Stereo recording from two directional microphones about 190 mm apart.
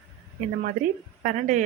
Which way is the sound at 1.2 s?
40° right (ahead or behind).